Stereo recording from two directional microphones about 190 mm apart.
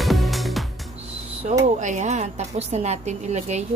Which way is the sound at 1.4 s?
40° right (ahead or behind).